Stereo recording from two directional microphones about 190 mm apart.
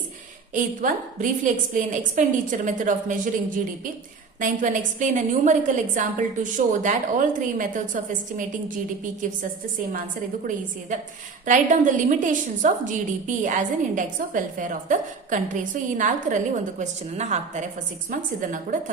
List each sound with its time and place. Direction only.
0.5 s a woman's voice: 45° right (ahead or behind)
4.4 s a woman's voice: 45° right (ahead or behind)
11.4 s a woman's voice: 40° right (ahead or behind)